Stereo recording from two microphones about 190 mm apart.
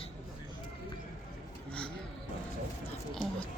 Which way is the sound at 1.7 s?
5° left (ahead or behind).